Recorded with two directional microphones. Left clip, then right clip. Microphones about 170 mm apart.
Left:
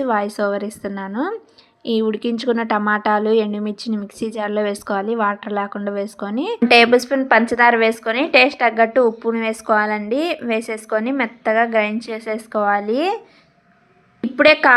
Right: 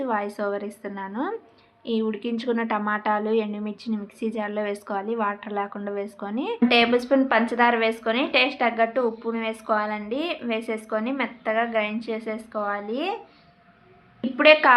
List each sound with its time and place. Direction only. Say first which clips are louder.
0.0 s a woman's voice: left 7 dB; 40° left (ahead or behind)
14.3 s a woman's voice: left 4 dB; 30° left (ahead or behind)